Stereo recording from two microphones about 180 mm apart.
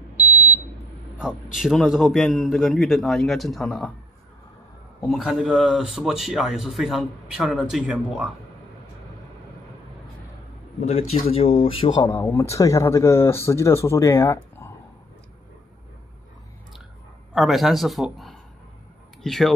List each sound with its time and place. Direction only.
1.2 s speech: 5° right (ahead or behind)
5.1 s speech: centre (ahead or behind)
10.9 s a man's voice: 35° left (ahead or behind)
12.1 s speech: 15° left (ahead or behind)
17.3 s a man's voice: centre (ahead or behind)